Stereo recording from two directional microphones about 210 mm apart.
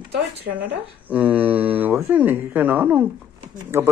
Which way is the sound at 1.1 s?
5° right (ahead or behind).